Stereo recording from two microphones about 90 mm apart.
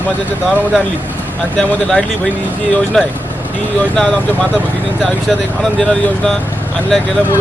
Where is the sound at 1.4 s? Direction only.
15° left (ahead or behind).